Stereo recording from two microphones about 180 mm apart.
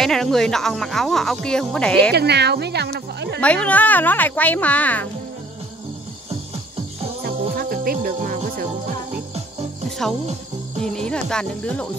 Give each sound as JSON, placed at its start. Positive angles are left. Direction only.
{"t": 0.0, "sound": "speech", "side_deg": 0}
{"t": 2.1, "sound": "speech", "side_deg": -65}
{"t": 3.3, "sound": "speech", "side_deg": 5}
{"t": 7.2, "sound": "music", "side_deg": -55}
{"t": 9.8, "sound": "music", "side_deg": 0}
{"t": 10.8, "sound": "speech", "side_deg": 5}